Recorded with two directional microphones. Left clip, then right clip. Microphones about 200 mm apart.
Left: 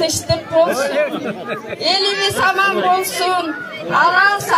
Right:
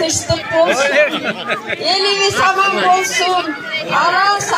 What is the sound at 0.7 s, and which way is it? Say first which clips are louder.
Speech: right 4 dB; 45° left (ahead or behind).